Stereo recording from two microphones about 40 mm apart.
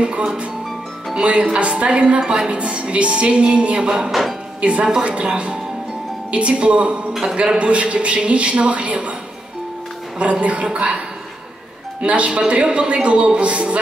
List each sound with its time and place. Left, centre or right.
0.0 s a man's voice: right
4.1 s speech: centre
4.6 s a man's voice: right
10.4 s a woman's voice: right
12.0 s a man's voice: right